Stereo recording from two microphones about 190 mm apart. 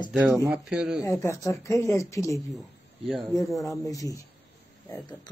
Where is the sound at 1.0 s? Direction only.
15° left (ahead or behind).